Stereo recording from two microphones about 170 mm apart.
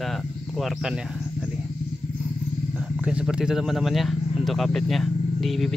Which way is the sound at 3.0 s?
5° right (ahead or behind).